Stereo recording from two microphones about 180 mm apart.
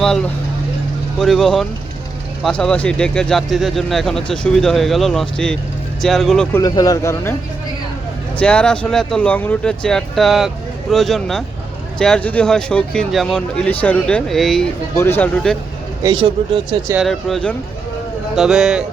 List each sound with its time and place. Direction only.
0.0 s speech: 5° left (ahead or behind)
6.6 s speech: 20° left (ahead or behind)
8.4 s speech: 5° left (ahead or behind)
14.9 s speech: 10° left (ahead or behind)
16.9 s speech: centre (ahead or behind)